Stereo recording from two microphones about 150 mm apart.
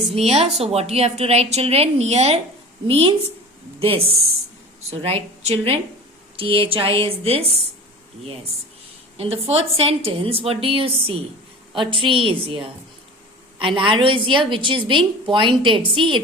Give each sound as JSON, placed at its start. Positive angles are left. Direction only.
{"t": 0.2, "sound": "a woman's voice", "side_deg": -45}
{"t": 9.1, "sound": "a woman's voice", "side_deg": -40}